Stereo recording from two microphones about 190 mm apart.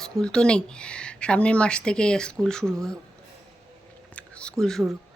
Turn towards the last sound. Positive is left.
turn(degrees=0)  # may be behind; listen again after turning